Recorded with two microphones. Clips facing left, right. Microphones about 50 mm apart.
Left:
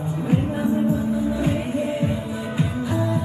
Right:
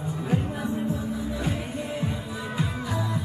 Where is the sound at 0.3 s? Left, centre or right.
Left.